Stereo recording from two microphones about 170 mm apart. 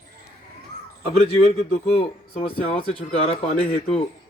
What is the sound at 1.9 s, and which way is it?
A man's voice, 40° left (ahead or behind).